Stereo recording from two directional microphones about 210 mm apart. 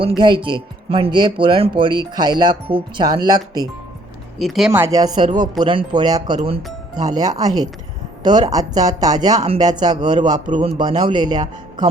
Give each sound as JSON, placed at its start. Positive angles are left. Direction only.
{"t": 0.2, "sound": "speech", "side_deg": -25}
{"t": 4.4, "sound": "speech", "side_deg": 0}